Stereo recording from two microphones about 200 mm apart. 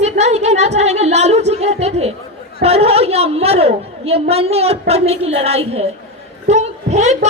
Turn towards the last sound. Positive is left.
turn(degrees=-35)  # may be behind; listen again after turning